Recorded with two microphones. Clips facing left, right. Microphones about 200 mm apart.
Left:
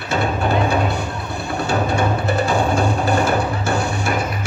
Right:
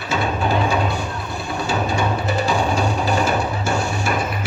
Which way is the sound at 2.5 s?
55° left (ahead or behind).